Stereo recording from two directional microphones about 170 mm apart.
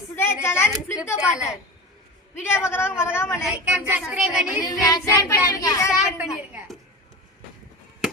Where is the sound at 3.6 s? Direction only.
10° right (ahead or behind).